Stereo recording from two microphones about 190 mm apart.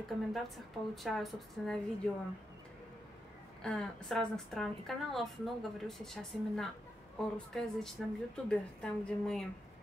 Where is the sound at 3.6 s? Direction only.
5° left (ahead or behind).